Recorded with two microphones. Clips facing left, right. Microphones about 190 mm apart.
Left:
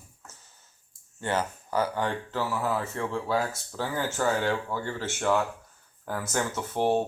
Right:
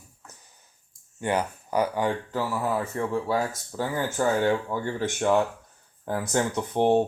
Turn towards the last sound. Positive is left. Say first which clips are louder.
# right 4 dB
turn(degrees=-20)  # may be behind; listen again after turning